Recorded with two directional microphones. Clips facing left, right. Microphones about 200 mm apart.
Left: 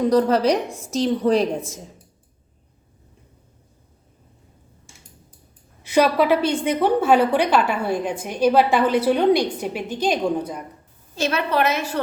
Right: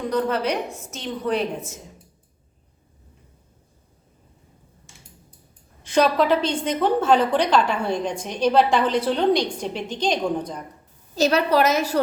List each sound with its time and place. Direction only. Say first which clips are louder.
0.1 s a woman's voice: left 3 dB; 35° left (ahead or behind)
5.8 s a woman's voice: left 1 dB; 10° left (ahead or behind)
11.1 s a woman's voice: right 3 dB; 40° right (ahead or behind)